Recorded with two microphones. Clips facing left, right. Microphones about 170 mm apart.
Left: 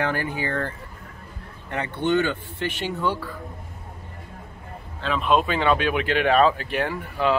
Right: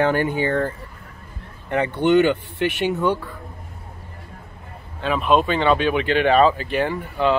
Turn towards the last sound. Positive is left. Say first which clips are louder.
# right 3 dB
turn(degrees=0)  # may be behind; listen again after turning